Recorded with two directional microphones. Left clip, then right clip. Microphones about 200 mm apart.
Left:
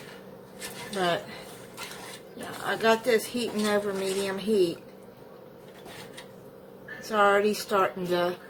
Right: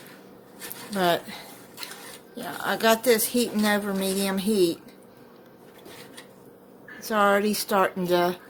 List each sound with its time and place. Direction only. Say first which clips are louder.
0.9 s a woman's voice: right 4 dB; 55° right (ahead or behind)
2.6 s a woman's voice: right 3 dB; 55° right (ahead or behind)
7.1 s speech: right 1 dB; 50° right (ahead or behind)